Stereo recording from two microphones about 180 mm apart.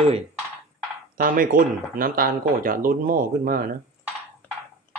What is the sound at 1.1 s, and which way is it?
Speech, 50° right (ahead or behind).